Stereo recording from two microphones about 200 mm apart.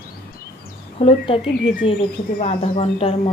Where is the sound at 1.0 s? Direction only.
30° left (ahead or behind).